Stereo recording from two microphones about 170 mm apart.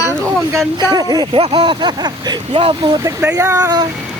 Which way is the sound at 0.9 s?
25° right (ahead or behind).